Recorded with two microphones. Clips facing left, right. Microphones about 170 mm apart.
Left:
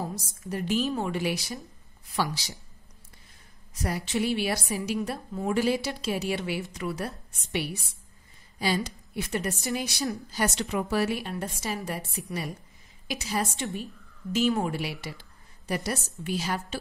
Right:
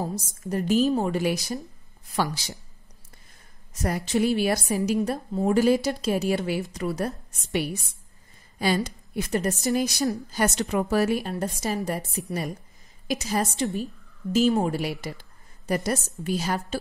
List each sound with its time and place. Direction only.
0.0 s a woman's voice: 45° right (ahead or behind)
3.8 s a woman's voice: 45° right (ahead or behind)